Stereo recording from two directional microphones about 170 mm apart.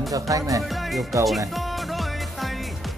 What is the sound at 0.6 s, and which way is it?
Music, centre (ahead or behind).